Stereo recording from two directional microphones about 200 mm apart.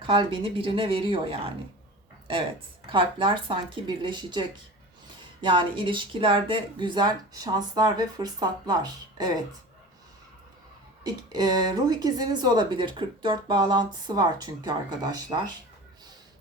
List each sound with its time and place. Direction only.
0.0 s speech: 25° right (ahead or behind)
2.9 s speech: 25° right (ahead or behind)
11.0 s speech: 20° right (ahead or behind)